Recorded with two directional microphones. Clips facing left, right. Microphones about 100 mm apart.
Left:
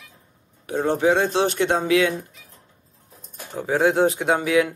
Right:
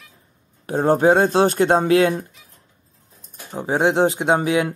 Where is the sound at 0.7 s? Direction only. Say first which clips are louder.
Right 4 dB; 40° right (ahead or behind).